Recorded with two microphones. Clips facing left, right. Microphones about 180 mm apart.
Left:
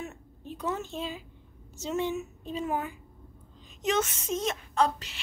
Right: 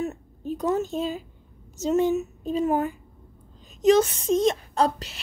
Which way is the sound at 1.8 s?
45° right (ahead or behind).